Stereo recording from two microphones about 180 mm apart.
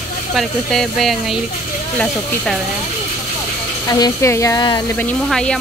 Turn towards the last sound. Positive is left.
turn(degrees=5)  # may be behind; listen again after turning